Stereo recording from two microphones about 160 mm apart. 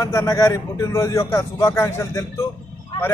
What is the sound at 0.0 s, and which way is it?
A man's voice, 20° left (ahead or behind).